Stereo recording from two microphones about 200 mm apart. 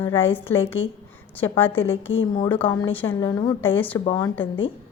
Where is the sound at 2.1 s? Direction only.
80° left.